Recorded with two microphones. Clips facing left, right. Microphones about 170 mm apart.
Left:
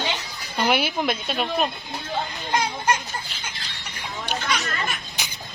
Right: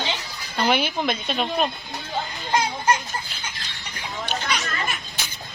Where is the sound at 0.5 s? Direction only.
5° left (ahead or behind).